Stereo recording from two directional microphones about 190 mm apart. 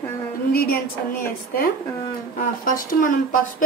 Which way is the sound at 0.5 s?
50° left (ahead or behind).